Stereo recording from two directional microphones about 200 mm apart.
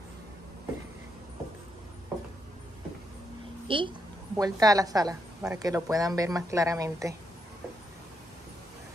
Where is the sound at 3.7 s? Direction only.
25° right (ahead or behind).